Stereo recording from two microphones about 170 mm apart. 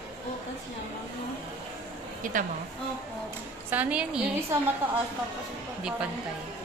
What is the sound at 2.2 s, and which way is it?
Speech, 55° right (ahead or behind).